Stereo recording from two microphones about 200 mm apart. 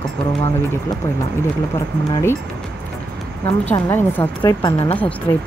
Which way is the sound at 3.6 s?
25° left (ahead or behind).